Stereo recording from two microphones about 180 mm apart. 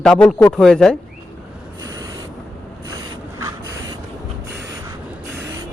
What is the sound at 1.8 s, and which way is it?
Rub, 20° right (ahead or behind).